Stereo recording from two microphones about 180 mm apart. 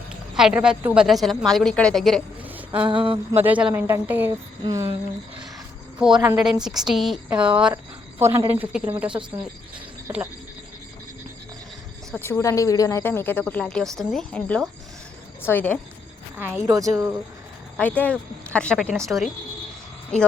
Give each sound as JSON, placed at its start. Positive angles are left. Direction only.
{"t": 0.3, "sound": "speech", "side_deg": -5}
{"t": 2.4, "sound": "a sound", "side_deg": -10}
{"t": 2.9, "sound": "a sound", "side_deg": -30}
{"t": 3.3, "sound": "speech", "side_deg": -10}
{"t": 6.0, "sound": "speech", "side_deg": -5}
{"t": 12.2, "sound": "speech", "side_deg": 15}
{"t": 16.6, "sound": "speech", "side_deg": -20}
{"t": 17.7, "sound": "speech", "side_deg": 10}